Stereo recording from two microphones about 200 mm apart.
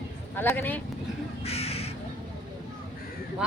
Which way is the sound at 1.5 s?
30° left (ahead or behind).